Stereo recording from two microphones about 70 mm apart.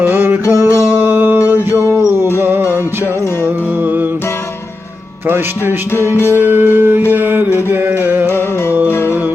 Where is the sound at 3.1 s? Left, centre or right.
Left.